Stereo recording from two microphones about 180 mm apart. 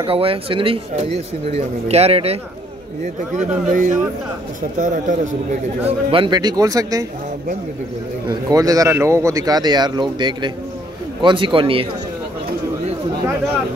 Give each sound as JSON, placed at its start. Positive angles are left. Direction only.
{"t": 0.0, "sound": "speech", "side_deg": -30}
{"t": 3.3, "sound": "speech", "side_deg": -45}
{"t": 5.9, "sound": "a man's voice", "side_deg": -30}
{"t": 8.3, "sound": "a man's voice", "side_deg": -20}